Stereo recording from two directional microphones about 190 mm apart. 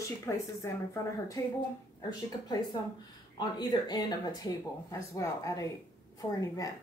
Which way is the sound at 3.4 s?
20° left (ahead or behind).